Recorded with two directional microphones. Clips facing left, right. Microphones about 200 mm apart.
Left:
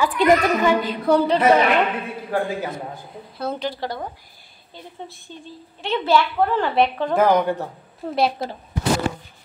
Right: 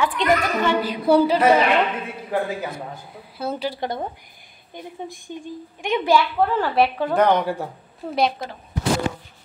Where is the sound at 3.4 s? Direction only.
5° right (ahead or behind).